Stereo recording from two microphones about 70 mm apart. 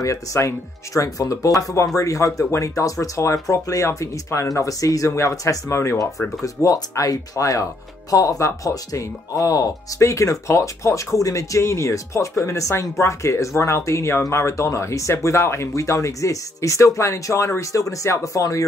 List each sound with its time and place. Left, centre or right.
0.0 s speech: left
5.7 s speech: left
6.4 s speech: left
9.9 s speech: left